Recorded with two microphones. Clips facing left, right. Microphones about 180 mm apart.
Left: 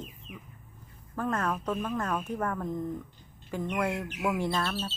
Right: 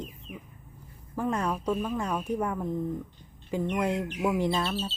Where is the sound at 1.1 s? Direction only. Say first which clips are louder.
Right 1 dB; 15° right (ahead or behind).